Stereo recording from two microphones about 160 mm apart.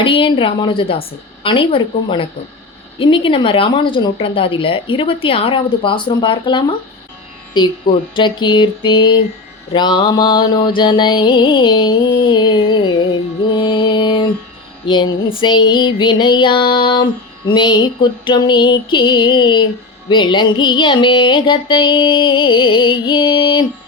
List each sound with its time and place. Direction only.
0.0 s speech: 35° left (ahead or behind)
8.1 s music: 30° left (ahead or behind)